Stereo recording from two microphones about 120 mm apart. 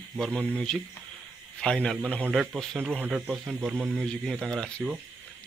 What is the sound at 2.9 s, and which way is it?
Speech, 15° right (ahead or behind).